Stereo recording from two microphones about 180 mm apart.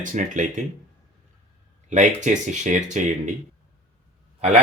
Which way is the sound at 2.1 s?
40° right (ahead or behind).